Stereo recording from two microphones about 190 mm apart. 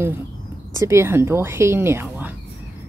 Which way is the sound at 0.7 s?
15° right (ahead or behind).